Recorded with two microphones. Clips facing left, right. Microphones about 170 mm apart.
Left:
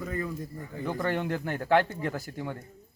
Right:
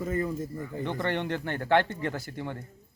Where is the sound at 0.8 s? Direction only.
5° left (ahead or behind).